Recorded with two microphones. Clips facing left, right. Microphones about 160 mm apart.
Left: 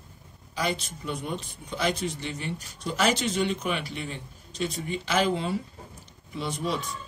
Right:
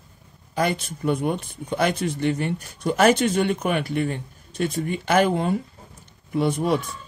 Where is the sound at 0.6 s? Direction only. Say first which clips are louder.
Right 6 dB; 55° right (ahead or behind).